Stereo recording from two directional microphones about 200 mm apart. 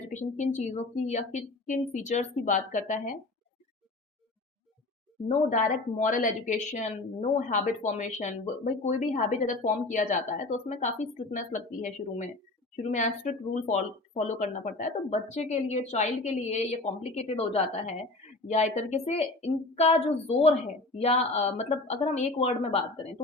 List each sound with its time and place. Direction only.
0.1 s a woman's voice: 35° left (ahead or behind)
5.5 s a woman's voice: 40° left (ahead or behind)